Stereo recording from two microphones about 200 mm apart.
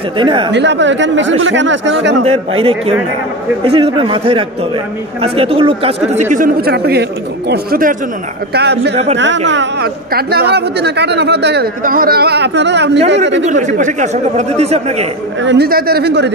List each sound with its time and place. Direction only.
0.2 s speech: 25° right (ahead or behind)
0.5 s speech: 60° right (ahead or behind)
2.2 s speech: 30° right (ahead or behind); by 8.9 s 55° right (ahead or behind)
8.9 s speech: 30° right (ahead or behind)
9.5 s speech: 60° right (ahead or behind)
13.5 s speech: 35° right (ahead or behind)
15.4 s speech: 55° right (ahead or behind)